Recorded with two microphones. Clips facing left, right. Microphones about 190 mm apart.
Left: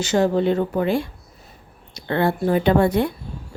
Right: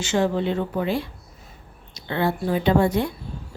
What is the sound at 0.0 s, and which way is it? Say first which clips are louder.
Speech: left 4 dB; 40° left (ahead or behind).